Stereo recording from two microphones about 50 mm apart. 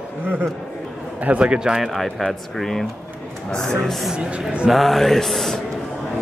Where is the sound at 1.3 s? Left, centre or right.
Right.